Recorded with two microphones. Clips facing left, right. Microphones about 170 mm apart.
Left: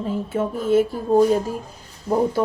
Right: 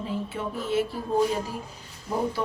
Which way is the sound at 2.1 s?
45° left (ahead or behind).